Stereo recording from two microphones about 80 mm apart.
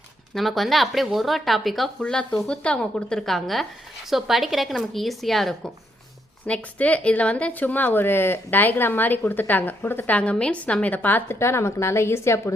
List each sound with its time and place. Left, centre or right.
0.3 s a woman's voice: centre
6.4 s speech: centre
10.2 s a woman's voice: centre; by 12.5 s left